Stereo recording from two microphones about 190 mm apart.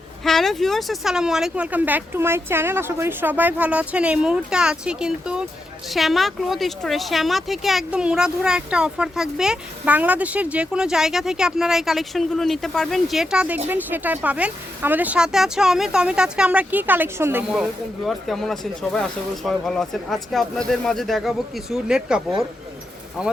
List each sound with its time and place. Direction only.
0.3 s speech: centre (ahead or behind)